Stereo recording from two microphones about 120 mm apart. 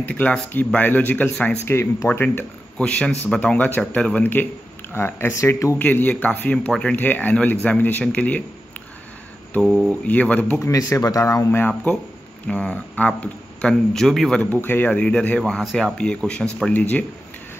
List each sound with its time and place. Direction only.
0.0 s speech: 10° left (ahead or behind)
1.7 s speech: 20° left (ahead or behind)
5.8 s speech: 15° left (ahead or behind)
9.6 s speech: centre (ahead or behind)
10.0 s speech: 10° left (ahead or behind)
10.6 s speech: 25° left (ahead or behind); by 14.4 s 5° left (ahead or behind)
14.4 s speech: 15° left (ahead or behind)